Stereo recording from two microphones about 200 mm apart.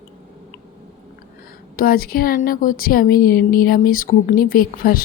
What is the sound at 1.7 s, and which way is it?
Speech, 45° left (ahead or behind).